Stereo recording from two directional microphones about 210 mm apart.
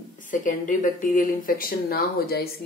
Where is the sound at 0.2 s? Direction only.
40° left (ahead or behind).